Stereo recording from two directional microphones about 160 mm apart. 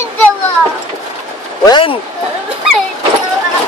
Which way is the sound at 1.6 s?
30° left (ahead or behind).